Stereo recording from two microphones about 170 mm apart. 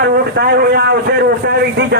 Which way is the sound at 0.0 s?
70° right (ahead or behind).